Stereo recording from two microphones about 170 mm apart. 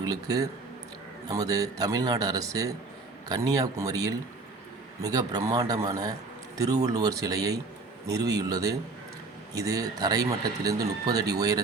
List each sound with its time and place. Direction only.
0.0 s speech: 20° right (ahead or behind)